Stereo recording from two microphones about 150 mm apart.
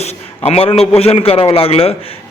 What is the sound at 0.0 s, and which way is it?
A man's voice, 45° left (ahead or behind).